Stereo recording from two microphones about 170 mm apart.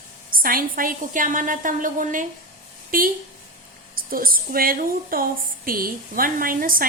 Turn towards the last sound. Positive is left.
turn(degrees=-55)  # may be behind; listen again after turning